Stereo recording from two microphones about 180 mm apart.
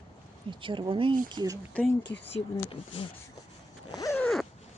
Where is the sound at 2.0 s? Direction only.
75° left (ahead or behind).